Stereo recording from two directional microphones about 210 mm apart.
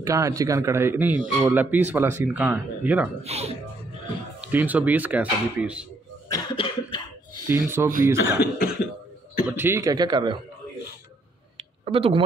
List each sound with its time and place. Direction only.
0.0 s a man's voice: 15° right (ahead or behind)
3.3 s speech: 30° right (ahead or behind)
4.4 s a man's voice: 10° right (ahead or behind)
6.3 s cough: 25° left (ahead or behind)
7.4 s a man's voice: 10° right (ahead or behind)
11.5 s a sound: 25° right (ahead or behind)